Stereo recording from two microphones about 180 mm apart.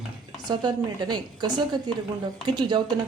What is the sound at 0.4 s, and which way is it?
A woman's voice, 25° right (ahead or behind).